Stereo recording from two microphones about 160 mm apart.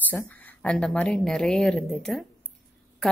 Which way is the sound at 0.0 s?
10° left (ahead or behind).